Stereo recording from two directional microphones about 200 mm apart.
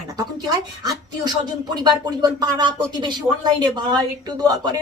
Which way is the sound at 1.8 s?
20° right (ahead or behind).